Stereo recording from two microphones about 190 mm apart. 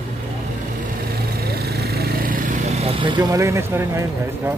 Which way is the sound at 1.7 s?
55° right (ahead or behind).